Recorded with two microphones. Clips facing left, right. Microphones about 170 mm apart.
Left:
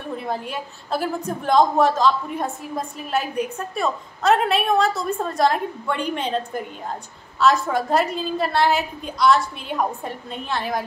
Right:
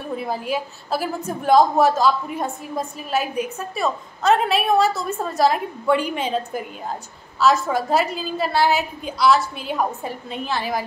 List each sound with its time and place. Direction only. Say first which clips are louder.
0.2 s a woman's voice: right 3 dB; 5° right (ahead or behind)